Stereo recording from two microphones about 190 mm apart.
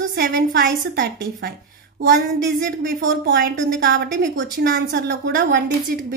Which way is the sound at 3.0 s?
75° right (ahead or behind).